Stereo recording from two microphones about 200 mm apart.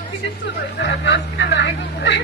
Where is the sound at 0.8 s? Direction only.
60° left (ahead or behind).